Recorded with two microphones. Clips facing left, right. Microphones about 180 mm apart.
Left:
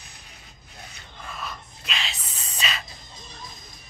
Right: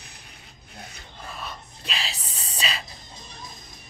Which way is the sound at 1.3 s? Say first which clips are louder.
Left 1 dB; centre (ahead or behind).